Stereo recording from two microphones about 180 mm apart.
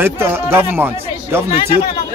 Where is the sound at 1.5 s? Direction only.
35° left (ahead or behind).